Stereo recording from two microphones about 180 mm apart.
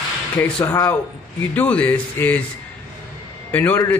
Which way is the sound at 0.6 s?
15° left (ahead or behind).